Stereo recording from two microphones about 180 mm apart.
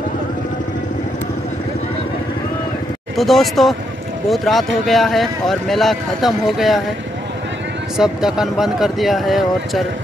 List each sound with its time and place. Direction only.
3.2 s speech: centre (ahead or behind)
8.0 s speech: 5° right (ahead or behind)